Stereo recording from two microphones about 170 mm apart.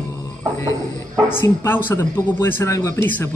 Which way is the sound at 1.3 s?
15° left (ahead or behind).